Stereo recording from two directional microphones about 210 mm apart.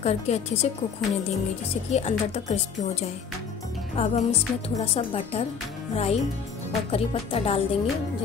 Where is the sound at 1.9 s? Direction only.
30° left (ahead or behind).